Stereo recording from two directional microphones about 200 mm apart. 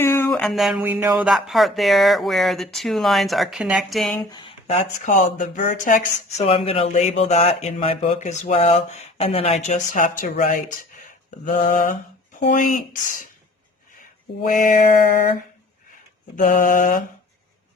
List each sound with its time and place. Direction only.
0.0 s a sound: 10° left (ahead or behind)
4.3 s speech: 25° left (ahead or behind); by 13.0 s 40° left (ahead or behind)
14.4 s speech: 40° left (ahead or behind)
16.3 s mantra: 40° left (ahead or behind)